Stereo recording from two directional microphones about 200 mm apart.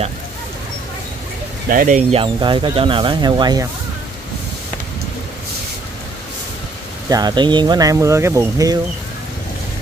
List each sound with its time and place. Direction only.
1.7 s speech: 40° right (ahead or behind); by 3.6 s 20° right (ahead or behind)
7.1 s speech: 20° right (ahead or behind)